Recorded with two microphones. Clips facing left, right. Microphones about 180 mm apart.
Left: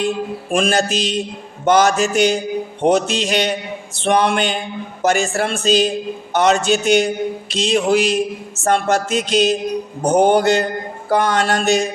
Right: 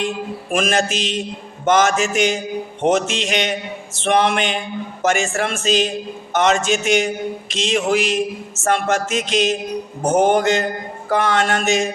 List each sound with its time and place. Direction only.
0.5 s a man's voice: 35° left (ahead or behind)